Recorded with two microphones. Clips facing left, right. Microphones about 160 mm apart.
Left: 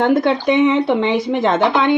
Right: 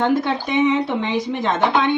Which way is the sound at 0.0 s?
55° left (ahead or behind).